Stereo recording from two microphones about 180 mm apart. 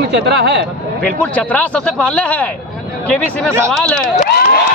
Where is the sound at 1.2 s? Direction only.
10° left (ahead or behind).